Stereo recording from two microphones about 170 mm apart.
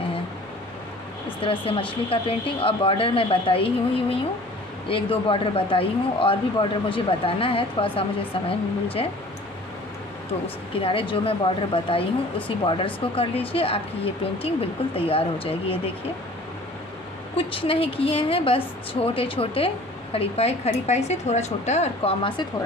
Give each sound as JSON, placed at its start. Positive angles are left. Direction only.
{"t": 1.4, "sound": "speech", "side_deg": 30}
{"t": 10.8, "sound": "speech", "side_deg": 30}
{"t": 17.4, "sound": "speech", "side_deg": 30}